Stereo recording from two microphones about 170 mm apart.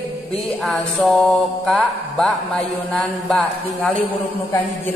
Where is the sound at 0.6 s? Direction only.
Centre (ahead or behind).